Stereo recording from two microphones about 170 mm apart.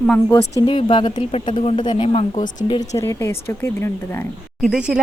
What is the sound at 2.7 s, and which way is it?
Speech, 20° left (ahead or behind).